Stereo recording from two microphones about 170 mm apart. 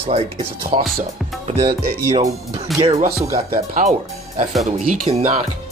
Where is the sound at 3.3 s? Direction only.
60° right (ahead or behind).